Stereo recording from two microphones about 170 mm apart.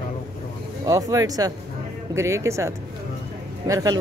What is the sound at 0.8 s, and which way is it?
Speech, 20° right (ahead or behind).